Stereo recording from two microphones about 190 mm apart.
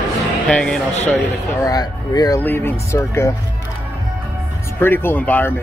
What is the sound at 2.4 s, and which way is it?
Speech, 10° left (ahead or behind).